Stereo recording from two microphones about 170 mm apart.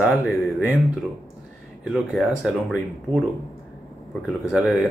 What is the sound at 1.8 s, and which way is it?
Speech, centre (ahead or behind).